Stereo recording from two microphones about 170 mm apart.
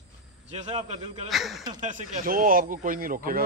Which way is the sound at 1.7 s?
45° right (ahead or behind).